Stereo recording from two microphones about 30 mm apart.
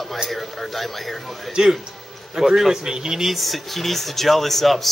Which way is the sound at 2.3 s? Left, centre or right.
Centre.